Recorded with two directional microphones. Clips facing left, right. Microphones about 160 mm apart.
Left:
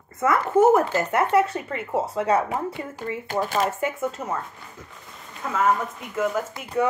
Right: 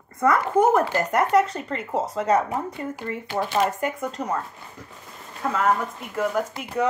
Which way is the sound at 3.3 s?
45° left (ahead or behind).